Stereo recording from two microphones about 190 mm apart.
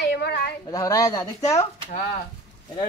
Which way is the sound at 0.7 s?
20° left (ahead or behind).